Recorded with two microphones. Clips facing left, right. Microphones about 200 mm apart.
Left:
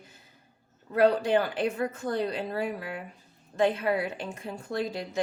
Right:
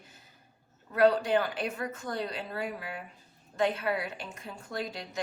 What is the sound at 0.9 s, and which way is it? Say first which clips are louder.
A woman's voice: left 2 dB; 30° left (ahead or behind).